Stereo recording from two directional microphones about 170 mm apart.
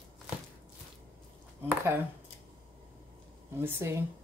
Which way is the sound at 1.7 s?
15° right (ahead or behind).